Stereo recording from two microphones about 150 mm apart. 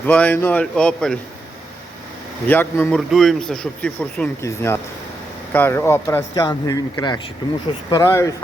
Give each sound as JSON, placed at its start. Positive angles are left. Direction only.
{"t": 0.0, "sound": "a man's voice", "side_deg": 10}
{"t": 2.5, "sound": "a man's voice", "side_deg": 15}
{"t": 2.9, "sound": "speech", "side_deg": 5}
{"t": 4.4, "sound": "a man's voice", "side_deg": 15}